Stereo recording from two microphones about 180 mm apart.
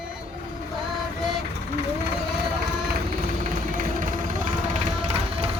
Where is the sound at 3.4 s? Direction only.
45° right (ahead or behind).